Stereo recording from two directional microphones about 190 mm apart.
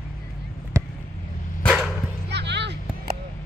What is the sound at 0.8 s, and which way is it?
Basketball bounce, 15° right (ahead or behind).